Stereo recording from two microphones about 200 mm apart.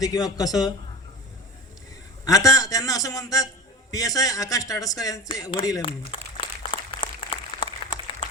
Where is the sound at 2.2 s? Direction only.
15° left (ahead or behind).